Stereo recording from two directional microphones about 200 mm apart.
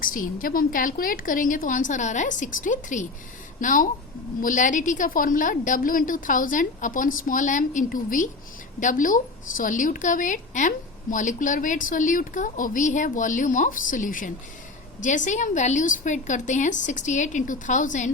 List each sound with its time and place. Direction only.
0.0 s a woman's voice: 45° left (ahead or behind)